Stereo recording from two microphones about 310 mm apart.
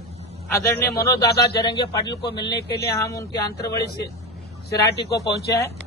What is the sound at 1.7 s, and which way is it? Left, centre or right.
Speech, centre.